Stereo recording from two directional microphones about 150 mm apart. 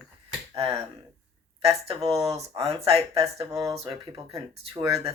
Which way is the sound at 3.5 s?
20° right (ahead or behind).